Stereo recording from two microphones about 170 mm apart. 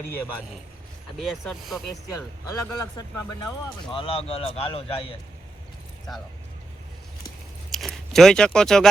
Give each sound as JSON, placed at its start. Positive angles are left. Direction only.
{"t": 1.2, "sound": "speech", "side_deg": 0}
{"t": 2.7, "sound": "speech", "side_deg": 20}
{"t": 3.9, "sound": "a man's voice", "side_deg": 35}
{"t": 7.7, "sound": "speech", "side_deg": 0}